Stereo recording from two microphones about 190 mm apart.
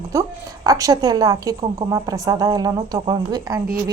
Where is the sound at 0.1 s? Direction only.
15° right (ahead or behind).